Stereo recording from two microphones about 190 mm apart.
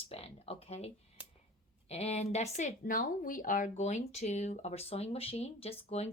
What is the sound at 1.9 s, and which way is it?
Speech, 35° left (ahead or behind).